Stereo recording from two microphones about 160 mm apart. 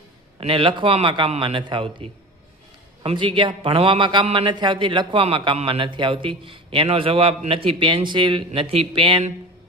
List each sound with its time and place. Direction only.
0.3 s a man's voice: 35° right (ahead or behind)